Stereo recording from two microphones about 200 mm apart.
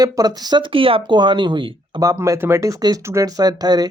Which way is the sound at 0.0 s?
20° right (ahead or behind).